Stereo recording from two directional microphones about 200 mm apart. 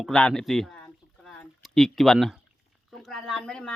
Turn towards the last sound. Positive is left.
turn(degrees=5)  # may be behind; listen again after turning